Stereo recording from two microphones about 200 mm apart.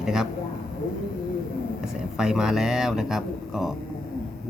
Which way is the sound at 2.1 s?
5° right (ahead or behind).